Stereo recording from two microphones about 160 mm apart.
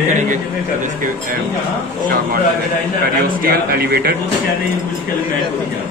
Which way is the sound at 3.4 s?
70° right (ahead or behind).